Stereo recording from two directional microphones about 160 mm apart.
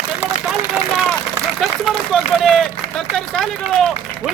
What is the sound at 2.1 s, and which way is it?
Speech, centre (ahead or behind).